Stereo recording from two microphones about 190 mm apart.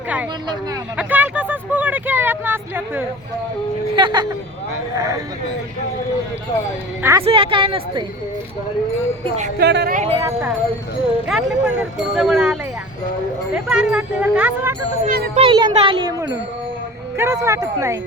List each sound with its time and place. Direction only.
0.9 s vehicle: 10° right (ahead or behind)
3.9 s a child's voice: 25° right (ahead or behind)
7.0 s speech: 15° right (ahead or behind)
7.3 s a child's voice: 30° right (ahead or behind)
9.6 s a woman's voice: 60° right (ahead or behind)
9.9 s speech: 35° right (ahead or behind)
10.2 s speech: 15° right (ahead or behind)
11.3 s speech: 5° right (ahead or behind)
13.7 s speech: 5° right (ahead or behind)
15.0 s a child's voice: 50° right (ahead or behind)
15.4 s a child's voice: 25° right (ahead or behind)